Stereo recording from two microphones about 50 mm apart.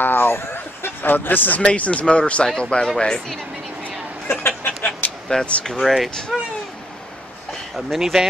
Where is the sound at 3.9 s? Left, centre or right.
Right.